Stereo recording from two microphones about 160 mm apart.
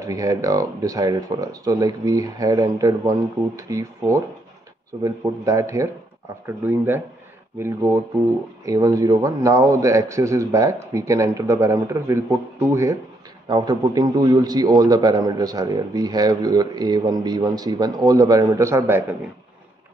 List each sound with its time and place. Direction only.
0.0 s a man's voice: 20° right (ahead or behind)